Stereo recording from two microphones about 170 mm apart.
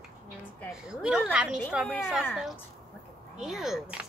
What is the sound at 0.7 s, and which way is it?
Speech, 5° right (ahead or behind).